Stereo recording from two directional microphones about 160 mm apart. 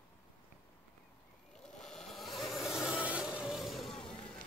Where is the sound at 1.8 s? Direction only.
Centre (ahead or behind).